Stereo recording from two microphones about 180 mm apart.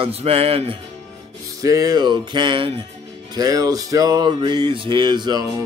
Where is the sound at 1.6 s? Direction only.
20° right (ahead or behind).